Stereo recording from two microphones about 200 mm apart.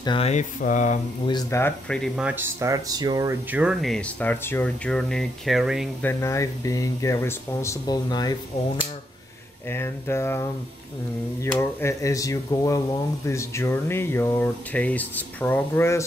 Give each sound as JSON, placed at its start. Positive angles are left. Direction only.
{"t": 0.0, "sound": "speech", "side_deg": 25}
{"t": 1.2, "sound": "speech", "side_deg": 20}
{"t": 1.9, "sound": "speech", "side_deg": 0}
{"t": 3.5, "sound": "speech", "side_deg": 0}
{"t": 6.0, "sound": "speech", "side_deg": 15}
{"t": 9.7, "sound": "speech", "side_deg": 10}
{"t": 11.5, "sound": "speech", "side_deg": 15}